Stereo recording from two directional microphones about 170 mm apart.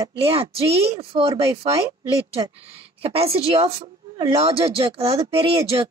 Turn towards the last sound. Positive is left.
turn(degrees=-35)  # may be behind; listen again after turning